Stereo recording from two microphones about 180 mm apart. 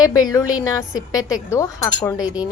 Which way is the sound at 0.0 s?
20° left (ahead or behind).